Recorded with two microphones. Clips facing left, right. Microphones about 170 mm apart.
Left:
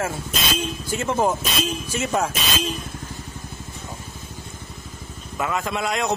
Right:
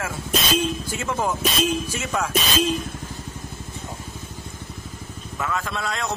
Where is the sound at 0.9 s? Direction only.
30° left (ahead or behind).